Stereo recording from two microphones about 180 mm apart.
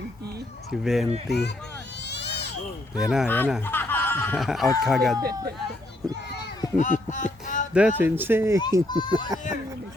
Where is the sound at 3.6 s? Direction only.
10° left (ahead or behind).